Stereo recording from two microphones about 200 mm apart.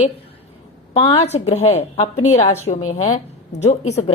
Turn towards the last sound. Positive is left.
turn(degrees=30)  # may be behind; listen again after turning